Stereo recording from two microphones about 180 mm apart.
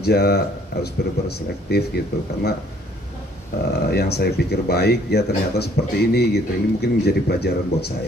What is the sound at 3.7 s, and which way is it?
Speech, 65° left (ahead or behind).